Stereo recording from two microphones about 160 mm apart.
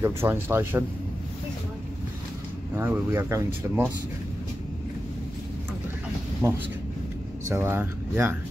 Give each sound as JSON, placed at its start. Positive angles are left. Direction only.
{"t": 0.0, "sound": "speech", "side_deg": -15}
{"t": 2.7, "sound": "speech", "side_deg": -15}
{"t": 6.4, "sound": "speech", "side_deg": -15}